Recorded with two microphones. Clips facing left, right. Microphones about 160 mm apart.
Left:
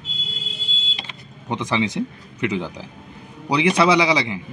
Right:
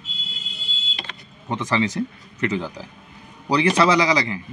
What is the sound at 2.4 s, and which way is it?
A man's voice, 15° left (ahead or behind).